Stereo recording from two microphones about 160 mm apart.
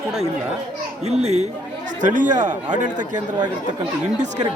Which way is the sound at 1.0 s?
40° right (ahead or behind).